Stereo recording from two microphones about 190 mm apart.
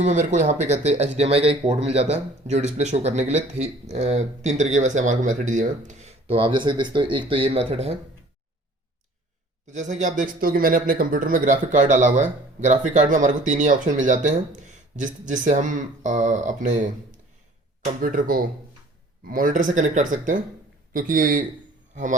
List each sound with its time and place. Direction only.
0.0 s speech: 40° right (ahead or behind)
9.7 s speech: 40° right (ahead or behind)